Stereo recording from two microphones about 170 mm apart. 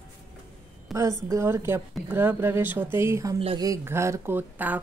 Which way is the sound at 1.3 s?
15° right (ahead or behind).